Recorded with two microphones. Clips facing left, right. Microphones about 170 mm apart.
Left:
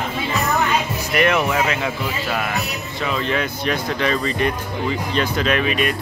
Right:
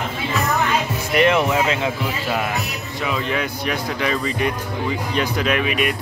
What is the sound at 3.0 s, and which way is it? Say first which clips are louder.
Speech: left 1 dB; 10° right (ahead or behind).